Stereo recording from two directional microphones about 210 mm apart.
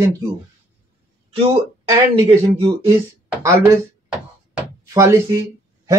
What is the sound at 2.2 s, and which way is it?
Speech, 30° right (ahead or behind).